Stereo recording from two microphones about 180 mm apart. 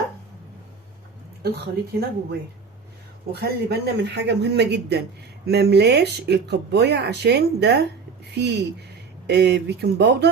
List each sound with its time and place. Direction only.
1.4 s a woman's voice: 65° right (ahead or behind)
3.3 s speech: 65° right (ahead or behind)